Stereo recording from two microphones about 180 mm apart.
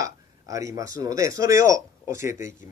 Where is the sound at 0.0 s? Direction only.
15° right (ahead or behind).